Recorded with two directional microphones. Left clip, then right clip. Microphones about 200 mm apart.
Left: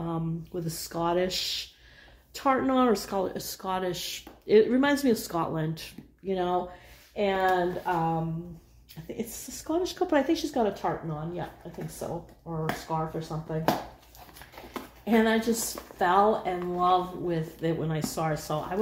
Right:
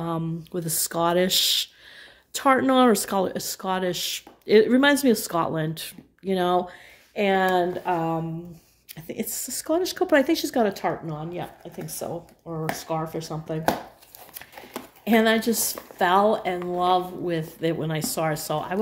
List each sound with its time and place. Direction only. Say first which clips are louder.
0.0 s speech: right 5 dB; 45° right (ahead or behind)
7.2 s speech: right 4 dB; 55° right (ahead or behind)
9.0 s speech: right 5 dB; 45° right (ahead or behind)
14.7 s speech: right 5 dB; 55° right (ahead or behind)